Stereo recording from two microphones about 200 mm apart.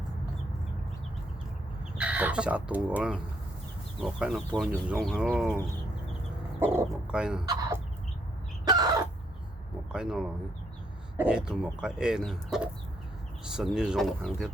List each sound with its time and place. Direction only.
2.0 s speech: 5° right (ahead or behind)
6.6 s speech: 10° right (ahead or behind)
7.4 s chicken: 20° right (ahead or behind)
9.9 s speech: 5° right (ahead or behind)